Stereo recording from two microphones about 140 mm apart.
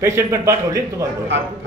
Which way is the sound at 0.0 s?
20° right (ahead or behind).